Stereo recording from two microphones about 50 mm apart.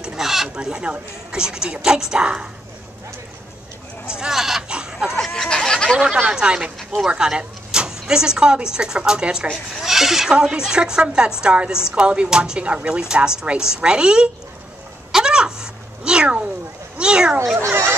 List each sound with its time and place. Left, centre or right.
0.0 s a sound: centre
0.6 s speech: centre
4.2 s speech: centre
4.6 s chicken: centre
5.2 s a sound: centre
5.5 s speech: centre
6.3 s speech: centre
9.8 s speech: centre
15.1 s a sound: centre
17.0 s speech: centre
17.6 s speech: right